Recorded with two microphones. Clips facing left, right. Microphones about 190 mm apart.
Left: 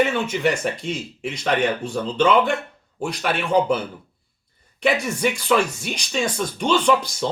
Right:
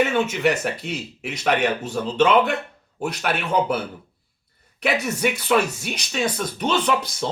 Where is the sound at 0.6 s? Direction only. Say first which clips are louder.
Left 2 dB; 5° right (ahead or behind).